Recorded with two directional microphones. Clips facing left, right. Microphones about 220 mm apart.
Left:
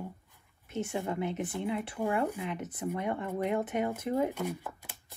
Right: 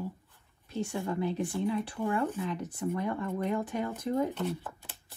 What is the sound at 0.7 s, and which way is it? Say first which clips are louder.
Speech: even; 20° left (ahead or behind).